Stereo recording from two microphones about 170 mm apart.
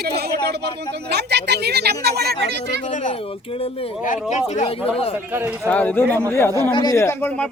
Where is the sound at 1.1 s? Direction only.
80° right.